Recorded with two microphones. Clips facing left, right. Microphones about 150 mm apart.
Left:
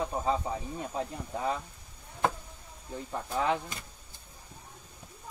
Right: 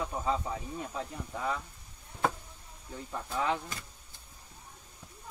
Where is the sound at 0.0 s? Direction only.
30° left (ahead or behind).